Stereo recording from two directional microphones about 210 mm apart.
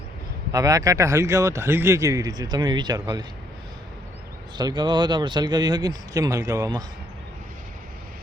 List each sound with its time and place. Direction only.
0.5 s speech: 15° right (ahead or behind)
4.5 s speech: 20° right (ahead or behind)